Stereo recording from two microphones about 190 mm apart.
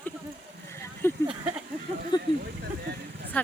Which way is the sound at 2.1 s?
20° left (ahead or behind).